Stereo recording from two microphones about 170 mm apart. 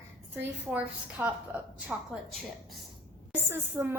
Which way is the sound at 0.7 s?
10° right (ahead or behind).